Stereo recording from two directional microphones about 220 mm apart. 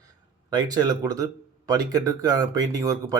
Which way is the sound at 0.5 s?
15° right (ahead or behind).